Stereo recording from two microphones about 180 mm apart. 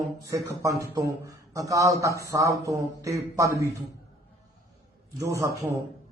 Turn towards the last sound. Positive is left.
turn(degrees=-15)  # may be behind; listen again after turning